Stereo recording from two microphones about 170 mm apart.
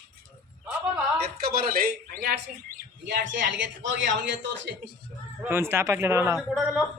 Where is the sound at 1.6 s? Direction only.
60° right (ahead or behind).